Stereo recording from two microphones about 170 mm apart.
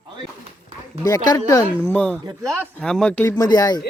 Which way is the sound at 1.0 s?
20° left (ahead or behind).